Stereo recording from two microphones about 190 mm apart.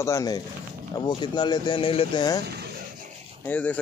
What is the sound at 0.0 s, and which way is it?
Speech, 20° left (ahead or behind).